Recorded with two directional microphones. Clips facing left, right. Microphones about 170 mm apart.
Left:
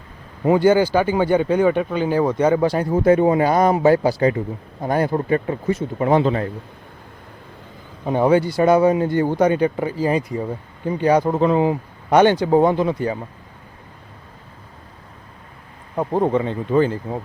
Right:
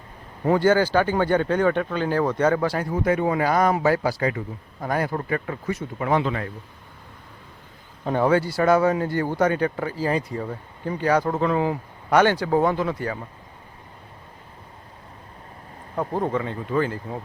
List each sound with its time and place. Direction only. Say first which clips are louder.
0.4 s speech: left 4 dB; 10° left (ahead or behind); by 6.5 s 30° left (ahead or behind)
8.0 s speech: left 4 dB; 15° left (ahead or behind)
16.0 s speech: left 6 dB; 25° left (ahead or behind)